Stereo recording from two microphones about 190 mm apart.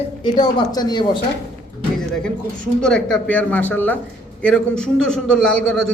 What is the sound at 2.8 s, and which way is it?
A man's voice, 5° left (ahead or behind).